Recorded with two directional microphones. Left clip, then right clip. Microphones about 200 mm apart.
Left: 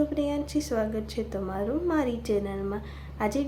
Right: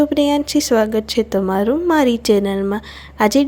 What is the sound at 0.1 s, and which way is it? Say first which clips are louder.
A woman's voice: right 13 dB; 50° right (ahead or behind).